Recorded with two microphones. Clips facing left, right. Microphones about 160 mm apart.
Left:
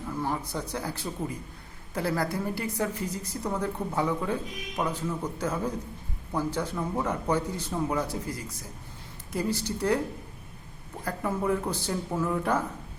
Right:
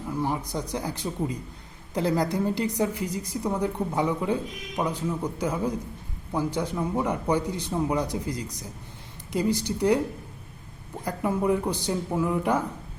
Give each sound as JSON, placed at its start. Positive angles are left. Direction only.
{"t": 0.1, "sound": "a woman's voice", "side_deg": -15}
{"t": 11.0, "sound": "a woman's voice", "side_deg": -15}